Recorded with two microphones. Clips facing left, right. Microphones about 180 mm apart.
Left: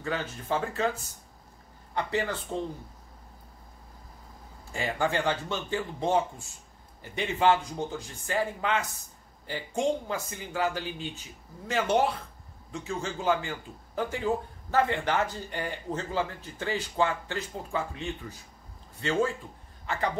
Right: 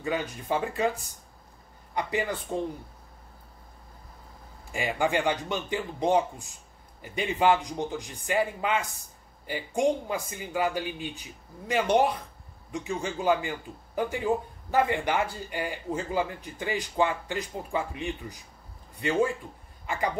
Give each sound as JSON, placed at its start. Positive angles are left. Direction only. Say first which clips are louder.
{"t": 0.0, "sound": "a man's voice", "louder": "right 2 dB", "side_deg": -15}
{"t": 2.0, "sound": "a man's voice", "louder": "even", "side_deg": -15}
{"t": 4.7, "sound": "a man's voice", "louder": "right 2 dB", "side_deg": -15}